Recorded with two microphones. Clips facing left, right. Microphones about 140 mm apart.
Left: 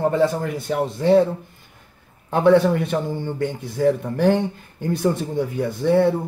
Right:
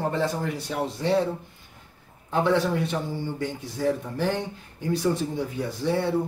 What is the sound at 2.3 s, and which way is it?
A man's voice, 55° left (ahead or behind).